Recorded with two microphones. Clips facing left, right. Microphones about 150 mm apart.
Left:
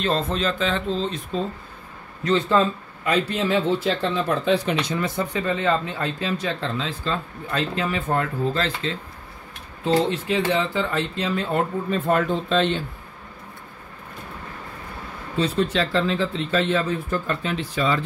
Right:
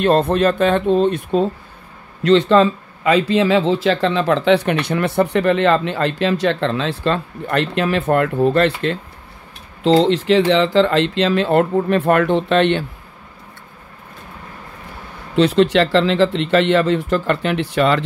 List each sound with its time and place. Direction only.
0.0 s speech: 60° right (ahead or behind)
2.2 s speech: 75° right (ahead or behind)
9.8 s speech: 90° right; by 12.8 s 70° right (ahead or behind)
15.3 s speech: 80° right